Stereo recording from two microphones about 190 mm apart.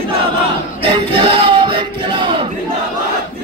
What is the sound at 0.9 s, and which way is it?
Music, 25° right (ahead or behind).